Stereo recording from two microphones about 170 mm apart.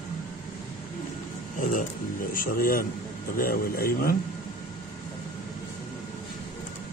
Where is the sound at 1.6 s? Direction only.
50° left (ahead or behind).